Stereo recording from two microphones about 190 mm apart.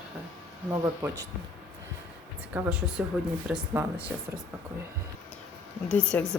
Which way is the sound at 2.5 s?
10° right (ahead or behind).